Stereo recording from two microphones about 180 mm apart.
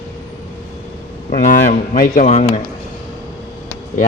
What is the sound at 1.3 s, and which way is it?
Speech, 45° left (ahead or behind).